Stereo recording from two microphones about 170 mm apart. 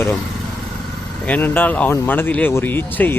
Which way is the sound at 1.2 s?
10° left (ahead or behind).